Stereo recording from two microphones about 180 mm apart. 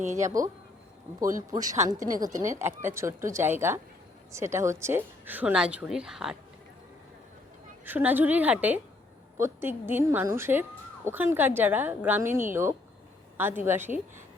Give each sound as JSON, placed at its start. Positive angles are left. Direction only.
{"t": 0.2, "sound": "a woman's voice", "side_deg": -15}
{"t": 1.5, "sound": "a woman's voice", "side_deg": -20}
{"t": 7.9, "sound": "a woman's voice", "side_deg": -10}